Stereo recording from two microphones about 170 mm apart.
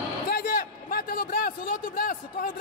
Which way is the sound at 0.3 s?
60° left (ahead or behind).